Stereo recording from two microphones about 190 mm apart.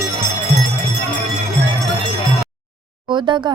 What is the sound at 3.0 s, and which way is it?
Speech, 25° right (ahead or behind).